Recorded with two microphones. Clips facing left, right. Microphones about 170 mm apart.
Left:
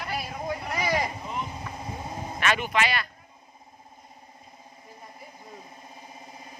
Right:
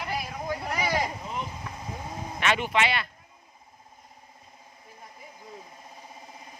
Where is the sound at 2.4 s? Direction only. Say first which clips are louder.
Even; 25° right (ahead or behind).